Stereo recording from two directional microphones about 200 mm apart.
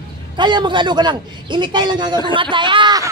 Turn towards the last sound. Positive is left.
turn(degrees=-20)  # may be behind; listen again after turning